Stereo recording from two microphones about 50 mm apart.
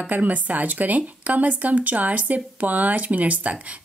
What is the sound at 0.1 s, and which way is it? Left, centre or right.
A woman's voice, right.